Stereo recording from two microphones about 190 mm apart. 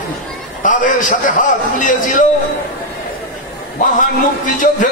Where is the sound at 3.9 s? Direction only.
40° left (ahead or behind).